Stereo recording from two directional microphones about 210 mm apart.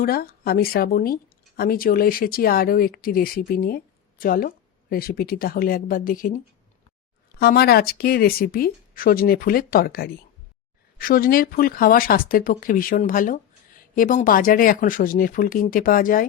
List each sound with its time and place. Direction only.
0.0 s speech: 45° left (ahead or behind)